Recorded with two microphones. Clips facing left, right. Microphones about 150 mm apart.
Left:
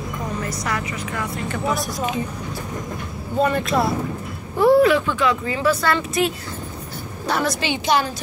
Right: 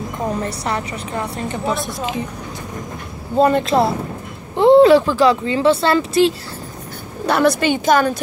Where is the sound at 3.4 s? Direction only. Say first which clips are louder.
Right 5 dB; 30° right (ahead or behind).